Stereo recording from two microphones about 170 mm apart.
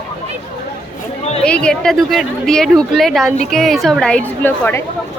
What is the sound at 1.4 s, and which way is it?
A woman's voice, 5° left (ahead or behind).